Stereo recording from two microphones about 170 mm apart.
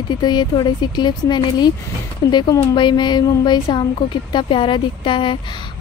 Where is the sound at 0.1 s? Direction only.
25° left (ahead or behind).